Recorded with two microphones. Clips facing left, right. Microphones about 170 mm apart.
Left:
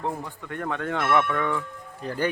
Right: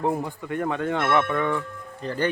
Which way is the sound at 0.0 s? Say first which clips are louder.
Right 6 dB; 15° right (ahead or behind).